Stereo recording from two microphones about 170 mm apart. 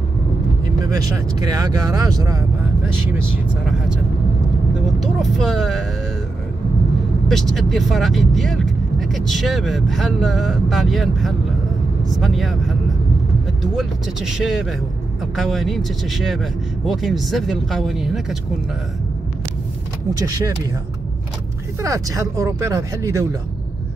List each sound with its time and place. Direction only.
0.8 s speech: 20° right (ahead or behind)
5.0 s speech: centre (ahead or behind)
7.2 s speech: centre (ahead or behind)
14.4 s speech: centre (ahead or behind)
20.2 s speech: 20° right (ahead or behind)
21.8 s speech: 20° right (ahead or behind)